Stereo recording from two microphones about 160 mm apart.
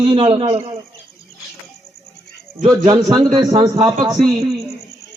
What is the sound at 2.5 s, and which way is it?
Speech, 55° right (ahead or behind).